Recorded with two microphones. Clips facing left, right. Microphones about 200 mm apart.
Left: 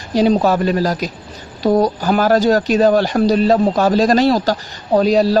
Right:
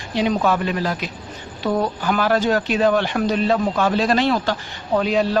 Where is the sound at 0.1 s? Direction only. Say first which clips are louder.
Left 6 dB; 35° left (ahead or behind).